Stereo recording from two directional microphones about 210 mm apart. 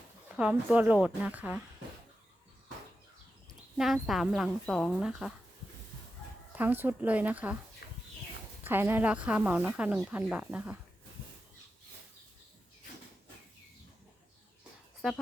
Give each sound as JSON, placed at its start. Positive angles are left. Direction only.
{"t": 0.3, "sound": "a woman's voice", "side_deg": -5}
{"t": 3.8, "sound": "speech", "side_deg": 0}
{"t": 6.6, "sound": "a woman's voice", "side_deg": -10}
{"t": 7.8, "sound": "a sound", "side_deg": 50}
{"t": 8.6, "sound": "a woman's voice", "side_deg": -10}